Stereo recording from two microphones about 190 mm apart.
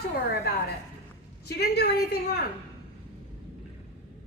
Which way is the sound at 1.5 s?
60° left (ahead or behind).